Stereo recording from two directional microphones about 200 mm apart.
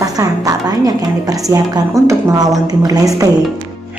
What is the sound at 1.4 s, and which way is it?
A woman's voice, 15° right (ahead or behind).